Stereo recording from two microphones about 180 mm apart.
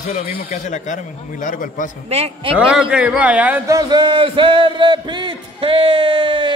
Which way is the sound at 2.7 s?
5° right (ahead or behind).